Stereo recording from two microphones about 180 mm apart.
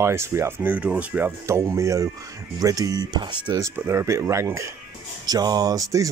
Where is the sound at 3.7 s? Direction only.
15° right (ahead or behind).